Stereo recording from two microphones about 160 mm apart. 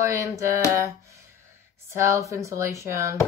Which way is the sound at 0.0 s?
20° right (ahead or behind).